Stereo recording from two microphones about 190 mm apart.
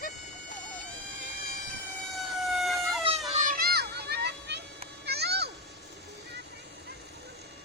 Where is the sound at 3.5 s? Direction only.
55° right (ahead or behind).